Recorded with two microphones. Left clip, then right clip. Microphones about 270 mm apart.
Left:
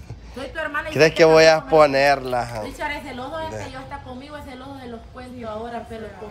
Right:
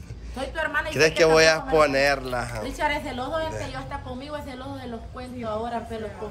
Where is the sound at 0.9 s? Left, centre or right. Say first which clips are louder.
Left 5 dB; centre.